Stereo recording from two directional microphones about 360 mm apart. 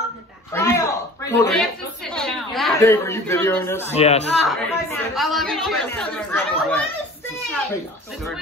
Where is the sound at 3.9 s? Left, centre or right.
Centre.